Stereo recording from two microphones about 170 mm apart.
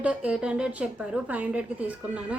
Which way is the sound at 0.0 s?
5° right (ahead or behind).